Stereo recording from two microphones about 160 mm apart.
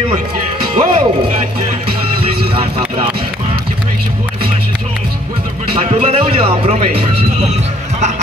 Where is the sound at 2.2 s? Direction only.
35° right (ahead or behind).